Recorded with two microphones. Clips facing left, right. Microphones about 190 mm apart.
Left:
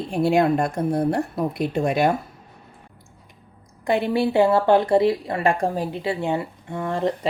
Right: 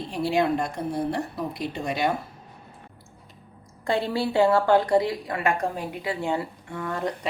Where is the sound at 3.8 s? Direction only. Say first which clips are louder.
Left 4 dB; 20° left (ahead or behind).